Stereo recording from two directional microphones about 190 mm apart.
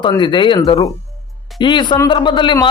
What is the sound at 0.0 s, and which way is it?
Speech, 25° left (ahead or behind).